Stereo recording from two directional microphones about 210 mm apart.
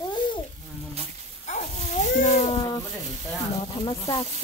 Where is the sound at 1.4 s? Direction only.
35° left (ahead or behind).